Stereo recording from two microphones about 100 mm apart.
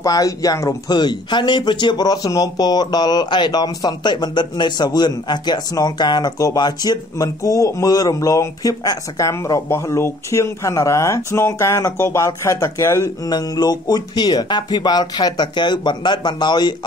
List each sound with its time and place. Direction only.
0.0 s speech: 35° left (ahead or behind)
13.3 s speech: 40° left (ahead or behind)